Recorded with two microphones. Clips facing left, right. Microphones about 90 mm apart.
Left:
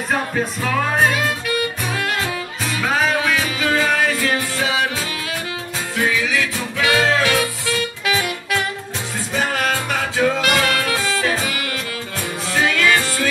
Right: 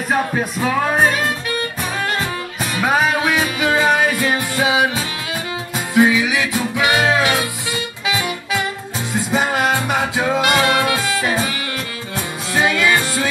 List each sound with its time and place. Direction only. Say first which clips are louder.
0.3 s music: right 2 dB; 15° right (ahead or behind)
2.8 s music: right 3 dB; 15° right (ahead or behind)
5.9 s music: right 6 dB; 15° right (ahead or behind)
12.5 s music: right 1 dB; 20° right (ahead or behind)